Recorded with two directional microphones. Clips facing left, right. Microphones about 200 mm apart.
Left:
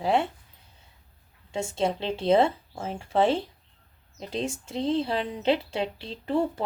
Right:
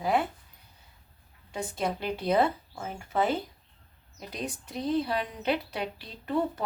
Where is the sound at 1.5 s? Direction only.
25° left (ahead or behind).